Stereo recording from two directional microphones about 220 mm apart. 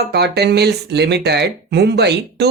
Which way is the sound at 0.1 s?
50° right (ahead or behind).